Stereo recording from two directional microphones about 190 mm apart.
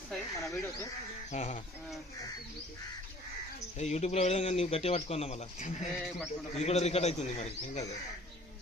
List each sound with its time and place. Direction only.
0.1 s speech: centre (ahead or behind)
1.3 s speech: 35° left (ahead or behind)
3.8 s speech: 35° left (ahead or behind)
6.0 s speech: centre (ahead or behind)
6.5 s speech: 35° left (ahead or behind)